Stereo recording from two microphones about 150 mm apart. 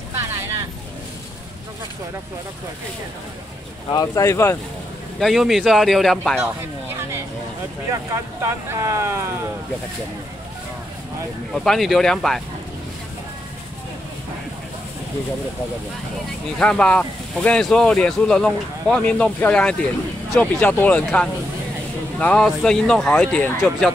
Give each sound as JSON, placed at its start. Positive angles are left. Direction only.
{"t": 3.9, "sound": "speech", "side_deg": 25}
{"t": 5.2, "sound": "speech", "side_deg": 0}
{"t": 7.9, "sound": "speech", "side_deg": -20}
{"t": 11.5, "sound": "speech", "side_deg": 5}
{"t": 16.5, "sound": "speech", "side_deg": 5}